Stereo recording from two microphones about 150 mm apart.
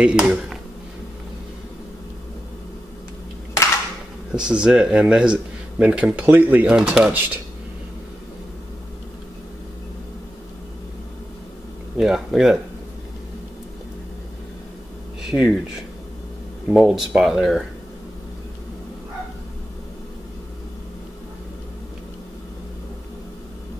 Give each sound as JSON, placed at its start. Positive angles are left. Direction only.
{"t": 0.0, "sound": "speech", "side_deg": -5}
{"t": 4.3, "sound": "speech", "side_deg": -5}
{"t": 12.0, "sound": "speech", "side_deg": -5}
{"t": 15.2, "sound": "speech", "side_deg": -5}
{"t": 16.6, "sound": "speech", "side_deg": -5}